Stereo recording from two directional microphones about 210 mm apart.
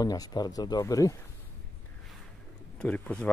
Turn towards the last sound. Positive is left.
turn(degrees=5)  # may be behind; listen again after turning